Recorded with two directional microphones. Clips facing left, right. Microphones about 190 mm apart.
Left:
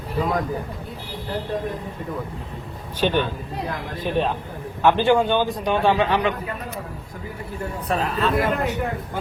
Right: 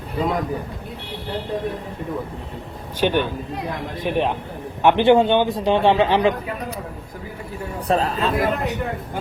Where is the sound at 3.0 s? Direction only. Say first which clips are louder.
Right 2 dB; 15° right (ahead or behind); by 6.4 s 30° right (ahead or behind).